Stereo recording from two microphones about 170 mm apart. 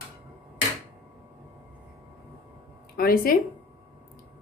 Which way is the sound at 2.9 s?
60° left (ahead or behind).